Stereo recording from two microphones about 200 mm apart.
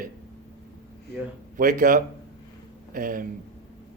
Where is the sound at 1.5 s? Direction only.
40° right (ahead or behind).